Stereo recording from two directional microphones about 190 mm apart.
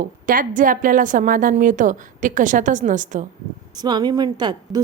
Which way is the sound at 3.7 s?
20° right (ahead or behind).